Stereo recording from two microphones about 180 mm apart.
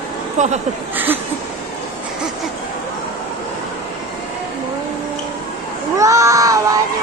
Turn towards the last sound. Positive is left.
turn(degrees=-20)  # may be behind; listen again after turning